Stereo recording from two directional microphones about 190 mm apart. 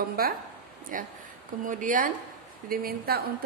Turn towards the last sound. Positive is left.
turn(degrees=-50)  # may be behind; listen again after turning